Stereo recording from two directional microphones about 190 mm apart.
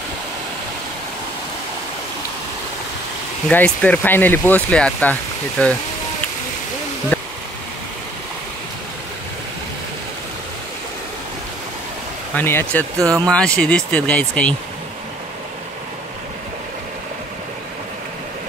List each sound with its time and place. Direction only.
3.4 s speech: 5° left (ahead or behind)
7.1 s a sound: 10° left (ahead or behind)
12.4 s speech: 10° left (ahead or behind)
13.0 s speech: 20° right (ahead or behind)
13.3 s speech: 5° left (ahead or behind)